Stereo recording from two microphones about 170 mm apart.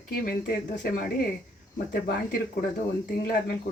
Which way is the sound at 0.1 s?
65° left (ahead or behind).